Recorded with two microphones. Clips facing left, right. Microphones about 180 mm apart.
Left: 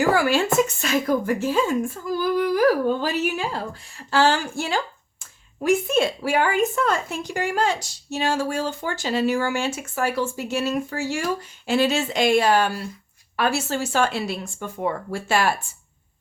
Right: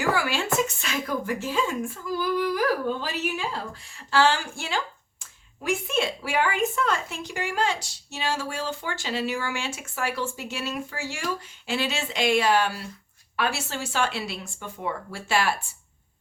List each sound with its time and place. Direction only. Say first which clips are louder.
0.0 s a woman's voice: left 6 dB; 45° left (ahead or behind)